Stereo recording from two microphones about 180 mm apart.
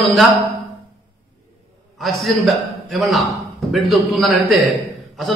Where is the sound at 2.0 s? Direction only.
Centre (ahead or behind).